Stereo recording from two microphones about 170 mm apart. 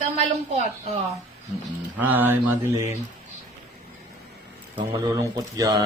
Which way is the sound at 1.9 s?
10° right (ahead or behind).